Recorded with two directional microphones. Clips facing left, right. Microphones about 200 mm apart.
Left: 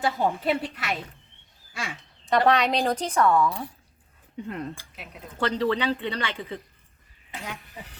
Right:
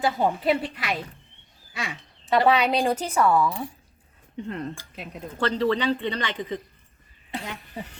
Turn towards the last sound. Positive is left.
turn(degrees=-30)  # may be behind; listen again after turning